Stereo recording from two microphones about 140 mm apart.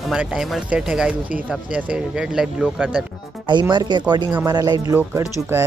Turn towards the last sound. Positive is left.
turn(degrees=-15)  # may be behind; listen again after turning